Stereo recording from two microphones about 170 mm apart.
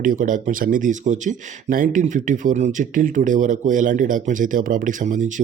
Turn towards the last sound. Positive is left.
turn(degrees=-50)  # may be behind; listen again after turning